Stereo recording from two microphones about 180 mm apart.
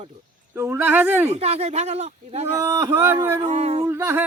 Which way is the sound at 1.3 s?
35° right (ahead or behind).